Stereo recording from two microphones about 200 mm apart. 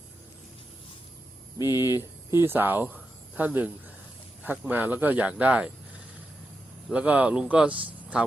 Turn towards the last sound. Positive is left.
turn(degrees=-25)  # may be behind; listen again after turning